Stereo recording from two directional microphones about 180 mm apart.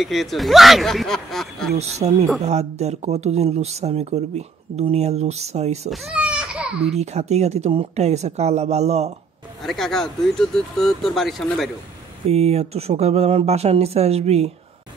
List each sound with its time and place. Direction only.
0.0 s speech: centre (ahead or behind)
1.8 s speech: 35° right (ahead or behind)
5.9 s baby cry: 5° right (ahead or behind)
6.8 s speech: 35° right (ahead or behind)
9.6 s speech: centre (ahead or behind)
12.3 s speech: 35° right (ahead or behind)